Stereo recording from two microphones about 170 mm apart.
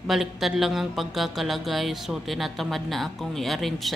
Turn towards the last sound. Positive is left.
turn(degrees=0)  # may be behind; listen again after turning